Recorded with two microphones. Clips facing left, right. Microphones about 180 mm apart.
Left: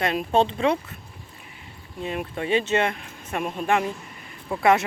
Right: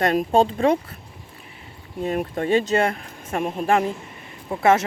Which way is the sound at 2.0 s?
45° right (ahead or behind).